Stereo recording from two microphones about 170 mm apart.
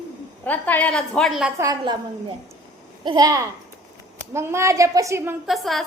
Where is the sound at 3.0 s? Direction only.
25° right (ahead or behind).